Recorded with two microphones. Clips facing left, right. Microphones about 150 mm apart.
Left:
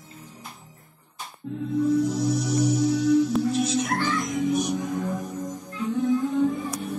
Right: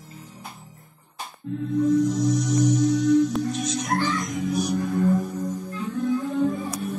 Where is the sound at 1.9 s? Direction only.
10° left (ahead or behind).